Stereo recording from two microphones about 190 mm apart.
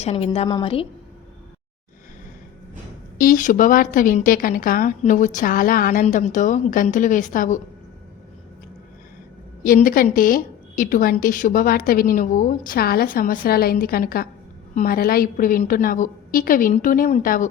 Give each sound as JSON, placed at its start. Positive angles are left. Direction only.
{"t": 0.0, "sound": "a woman's voice", "side_deg": 35}
{"t": 3.2, "sound": "a woman's voice", "side_deg": 45}
{"t": 9.6, "sound": "a woman's voice", "side_deg": 45}